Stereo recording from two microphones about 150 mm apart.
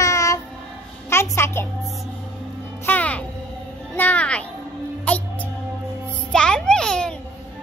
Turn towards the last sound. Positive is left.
turn(degrees=5)  # may be behind; listen again after turning